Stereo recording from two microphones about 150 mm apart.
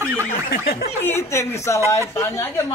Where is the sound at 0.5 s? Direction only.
90° left.